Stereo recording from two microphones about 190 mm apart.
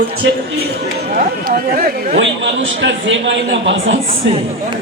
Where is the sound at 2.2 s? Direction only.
75° right (ahead or behind).